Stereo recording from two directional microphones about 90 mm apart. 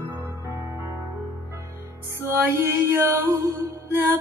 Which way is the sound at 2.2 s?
25° right (ahead or behind).